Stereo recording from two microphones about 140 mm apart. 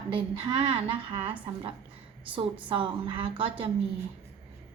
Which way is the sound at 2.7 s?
35° right (ahead or behind).